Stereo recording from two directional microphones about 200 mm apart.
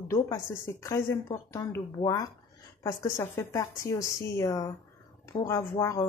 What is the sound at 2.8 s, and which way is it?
Speech, 15° left (ahead or behind).